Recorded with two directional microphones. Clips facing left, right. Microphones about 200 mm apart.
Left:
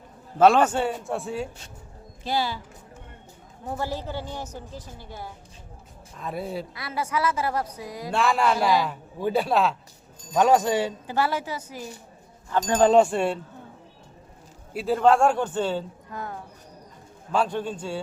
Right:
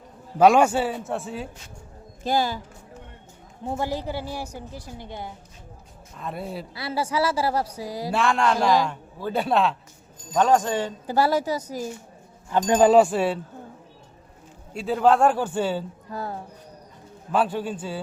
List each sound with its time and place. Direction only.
0.3 s a man's voice: 10° right (ahead or behind)
2.2 s speech: 45° right (ahead or behind)
3.7 s a woman's voice: 15° right (ahead or behind)
6.1 s a man's voice: centre (ahead or behind)
6.7 s a woman's voice: 30° right (ahead or behind)
8.1 s a man's voice: centre (ahead or behind)
11.0 s a woman's voice: 40° right (ahead or behind)
12.5 s a woman's voice: 15° right (ahead or behind)
14.7 s a man's voice: centre (ahead or behind)
16.1 s a woman's voice: 35° right (ahead or behind)
17.3 s a man's voice: 5° right (ahead or behind)